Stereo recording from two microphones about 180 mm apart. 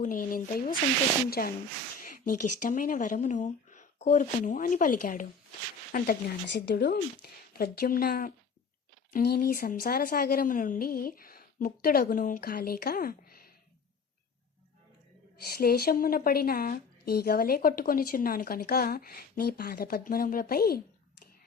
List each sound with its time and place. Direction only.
0.0 s a woman's voice: 50° left (ahead or behind)
6.5 s a woman's voice: 75° left (ahead or behind); by 13.5 s 55° left (ahead or behind)
15.4 s a woman's voice: 60° left (ahead or behind)